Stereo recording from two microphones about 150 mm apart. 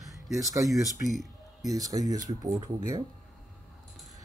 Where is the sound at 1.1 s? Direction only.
Centre (ahead or behind).